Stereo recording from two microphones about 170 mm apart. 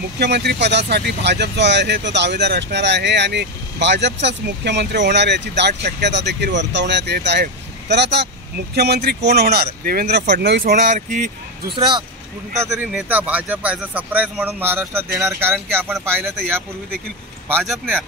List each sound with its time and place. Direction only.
0.2 s speech: 80° right
8.7 s speech: 70° right (ahead or behind)
10.9 s speech: 50° right (ahead or behind)
11.7 s speech: 30° right (ahead or behind)
12.6 s speech: 15° right (ahead or behind)